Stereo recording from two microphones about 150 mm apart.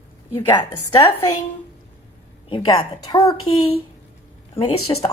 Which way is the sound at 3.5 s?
40° left (ahead or behind).